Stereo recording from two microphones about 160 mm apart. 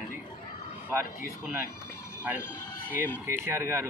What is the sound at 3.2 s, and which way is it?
Speech, 15° right (ahead or behind).